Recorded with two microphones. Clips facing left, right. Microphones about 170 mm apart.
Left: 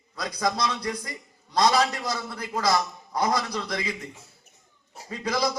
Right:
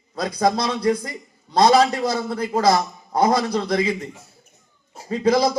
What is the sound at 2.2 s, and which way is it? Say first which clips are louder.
Speech: right 9 dB; 50° right (ahead or behind).